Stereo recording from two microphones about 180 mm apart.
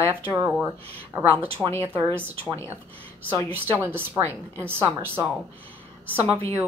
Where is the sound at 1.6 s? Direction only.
5° right (ahead or behind).